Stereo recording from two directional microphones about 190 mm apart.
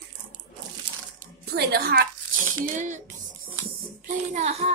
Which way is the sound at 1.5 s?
50° right (ahead or behind).